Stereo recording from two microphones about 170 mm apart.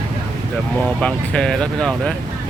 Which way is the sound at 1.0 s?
5° left (ahead or behind).